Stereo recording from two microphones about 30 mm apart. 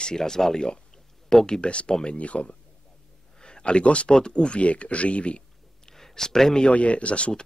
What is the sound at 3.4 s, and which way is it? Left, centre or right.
Speech, left.